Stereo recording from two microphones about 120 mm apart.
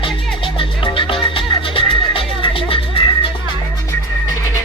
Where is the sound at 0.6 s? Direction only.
45° left (ahead or behind).